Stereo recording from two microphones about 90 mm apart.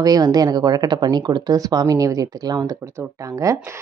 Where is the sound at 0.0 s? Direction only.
45° right (ahead or behind).